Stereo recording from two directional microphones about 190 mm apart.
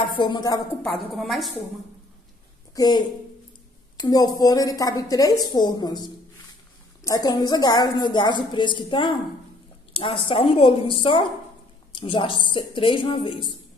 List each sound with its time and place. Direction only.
0.0 s a woman's voice: 25° left (ahead or behind)
0.8 s a woman's voice: centre (ahead or behind)
2.7 s a woman's voice: 20° left (ahead or behind)
7.1 s a woman's voice: 20° left (ahead or behind)